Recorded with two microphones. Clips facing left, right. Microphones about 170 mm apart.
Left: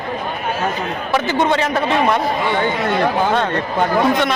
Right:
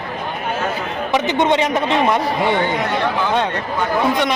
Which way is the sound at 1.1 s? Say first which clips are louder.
Right 1 dB; 20° right (ahead or behind).